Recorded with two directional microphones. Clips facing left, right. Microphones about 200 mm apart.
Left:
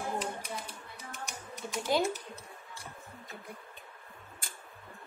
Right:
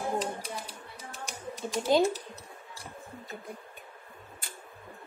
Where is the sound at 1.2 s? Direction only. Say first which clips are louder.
Right 6 dB; 25° right (ahead or behind).